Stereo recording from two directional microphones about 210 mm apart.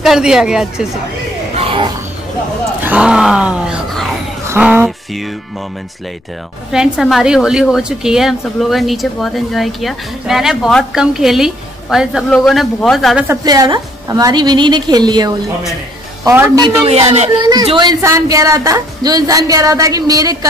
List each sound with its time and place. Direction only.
0.0 s a woman's voice: centre (ahead or behind)
1.5 s a sound: 25° right (ahead or behind)
2.8 s speech: 5° right (ahead or behind)
6.7 s a woman's voice: centre (ahead or behind)
13.3 s a woman's voice: 15° right (ahead or behind)
16.6 s a woman's voice: 25° right (ahead or behind)